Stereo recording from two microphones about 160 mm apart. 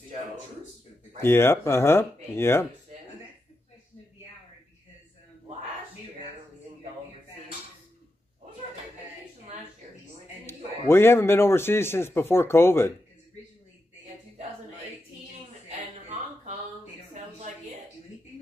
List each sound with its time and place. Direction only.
1.2 s a man's voice: 15° left (ahead or behind)
10.4 s a man's voice: 15° left (ahead or behind)
17.1 s a sound: 50° right (ahead or behind)